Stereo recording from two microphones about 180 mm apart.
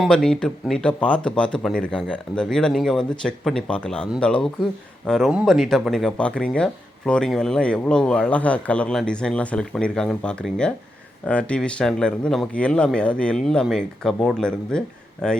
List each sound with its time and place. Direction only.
0.0 s speech: 5° left (ahead or behind)